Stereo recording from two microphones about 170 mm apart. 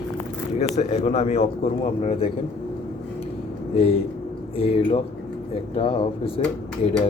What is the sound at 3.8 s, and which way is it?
Speech, 35° left (ahead or behind).